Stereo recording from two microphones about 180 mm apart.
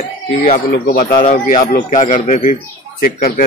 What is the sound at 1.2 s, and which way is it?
A man's voice, 45° left (ahead or behind).